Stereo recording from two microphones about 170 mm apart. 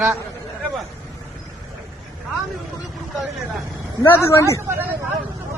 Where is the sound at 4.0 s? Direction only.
15° left (ahead or behind).